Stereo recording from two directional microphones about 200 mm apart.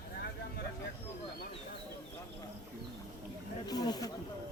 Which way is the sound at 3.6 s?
20° left (ahead or behind).